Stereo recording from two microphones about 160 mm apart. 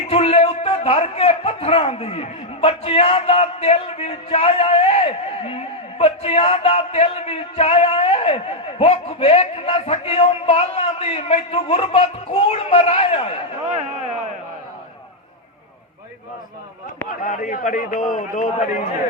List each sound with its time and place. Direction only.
0.1 s a man's voice: 40° left (ahead or behind)
17.1 s a man's voice: 55° left (ahead or behind)